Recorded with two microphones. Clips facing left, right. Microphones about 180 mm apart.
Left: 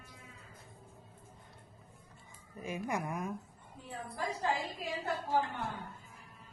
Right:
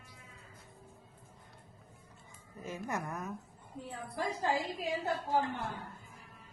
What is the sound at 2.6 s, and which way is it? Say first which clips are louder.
Speech: left 2 dB; 10° left (ahead or behind).